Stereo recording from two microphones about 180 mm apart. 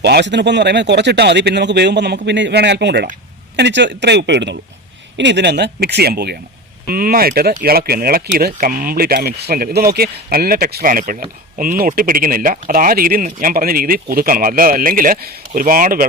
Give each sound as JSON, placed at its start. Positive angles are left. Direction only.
{"t": 0.0, "sound": "speech", "side_deg": -70}